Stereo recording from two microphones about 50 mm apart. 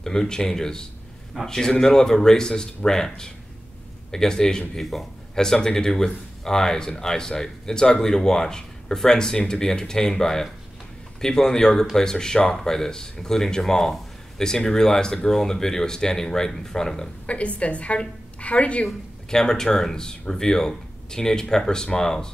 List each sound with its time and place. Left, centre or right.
0.0 s speech: centre
4.8 s a man's voice: centre
5.4 s speech: centre
17.3 s a woman's voice: left
18.9 s speech: centre